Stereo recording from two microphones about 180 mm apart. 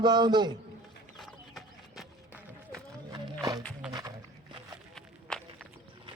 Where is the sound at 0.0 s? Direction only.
25° right (ahead or behind).